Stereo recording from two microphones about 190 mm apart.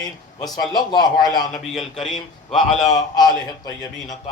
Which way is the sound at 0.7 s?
20° left (ahead or behind).